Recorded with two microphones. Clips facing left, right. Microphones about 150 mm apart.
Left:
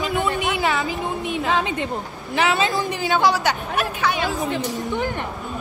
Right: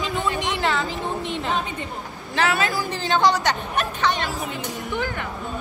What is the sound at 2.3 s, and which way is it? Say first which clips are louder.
Speech: left 2 dB; 20° left (ahead or behind).